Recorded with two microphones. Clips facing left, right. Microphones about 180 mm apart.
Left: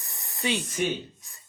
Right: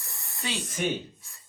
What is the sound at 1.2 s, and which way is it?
Beatboxing, 20° left (ahead or behind).